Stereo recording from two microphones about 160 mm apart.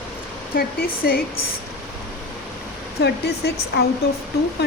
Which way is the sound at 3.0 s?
90° left.